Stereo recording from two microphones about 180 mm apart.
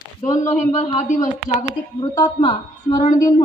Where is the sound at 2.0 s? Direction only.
25° left (ahead or behind).